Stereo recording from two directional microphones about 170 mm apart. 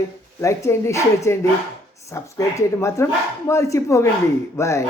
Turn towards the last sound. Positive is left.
turn(degrees=15)  # may be behind; listen again after turning